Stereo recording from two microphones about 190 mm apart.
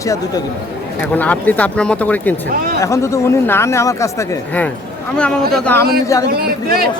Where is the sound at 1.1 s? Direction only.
10° left (ahead or behind).